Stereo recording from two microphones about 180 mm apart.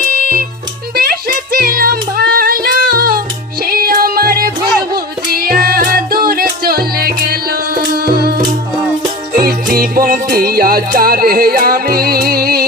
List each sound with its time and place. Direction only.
0.0 s music: 55° right (ahead or behind)
9.4 s music: 55° right (ahead or behind)